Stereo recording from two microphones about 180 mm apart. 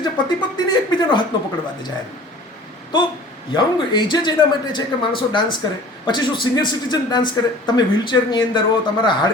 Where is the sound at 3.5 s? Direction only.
25° left (ahead or behind).